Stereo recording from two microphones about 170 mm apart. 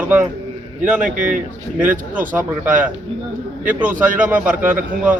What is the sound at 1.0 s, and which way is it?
Speech, 50° right (ahead or behind).